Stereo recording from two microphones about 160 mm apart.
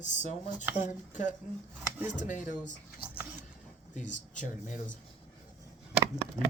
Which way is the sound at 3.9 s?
50° left (ahead or behind).